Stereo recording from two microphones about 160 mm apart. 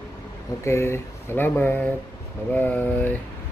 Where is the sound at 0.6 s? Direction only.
15° left (ahead or behind).